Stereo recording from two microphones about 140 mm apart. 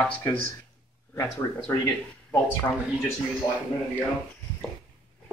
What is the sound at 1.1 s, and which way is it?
Speech, 20° left (ahead or behind).